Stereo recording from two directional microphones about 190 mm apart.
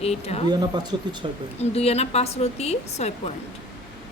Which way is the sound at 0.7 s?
20° right (ahead or behind).